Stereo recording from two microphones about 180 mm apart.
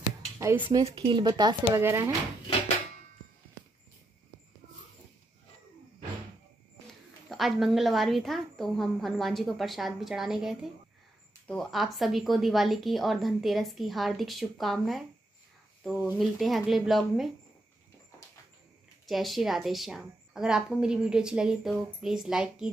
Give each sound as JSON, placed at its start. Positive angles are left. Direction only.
{"t": 0.4, "sound": "speech", "side_deg": -15}
{"t": 1.8, "sound": "speech", "side_deg": -15}
{"t": 6.9, "sound": "a woman's voice", "side_deg": 0}
{"t": 19.0, "sound": "a woman's voice", "side_deg": 0}